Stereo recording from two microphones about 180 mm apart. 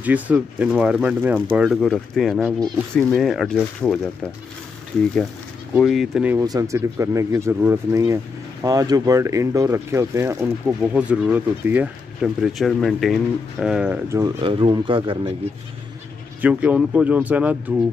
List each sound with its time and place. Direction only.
0.0 s speech: 10° right (ahead or behind)
5.8 s speech: centre (ahead or behind)
6.3 s speech: 20° right (ahead or behind)
14.4 s speech: 30° right (ahead or behind)
16.3 s speech: 10° right (ahead or behind)